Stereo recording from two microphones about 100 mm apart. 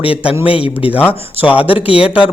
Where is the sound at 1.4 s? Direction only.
15° right (ahead or behind).